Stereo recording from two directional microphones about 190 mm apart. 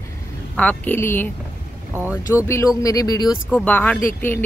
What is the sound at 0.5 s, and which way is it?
Speech, 10° left (ahead or behind).